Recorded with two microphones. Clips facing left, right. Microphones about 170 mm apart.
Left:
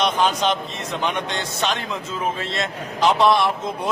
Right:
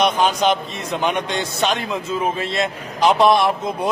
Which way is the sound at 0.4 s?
10° right (ahead or behind).